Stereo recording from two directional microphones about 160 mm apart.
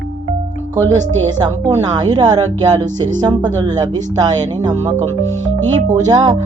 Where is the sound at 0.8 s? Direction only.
25° right (ahead or behind).